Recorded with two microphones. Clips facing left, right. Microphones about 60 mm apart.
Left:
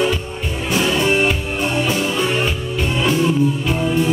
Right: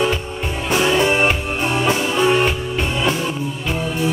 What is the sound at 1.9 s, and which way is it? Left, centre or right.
Music, centre.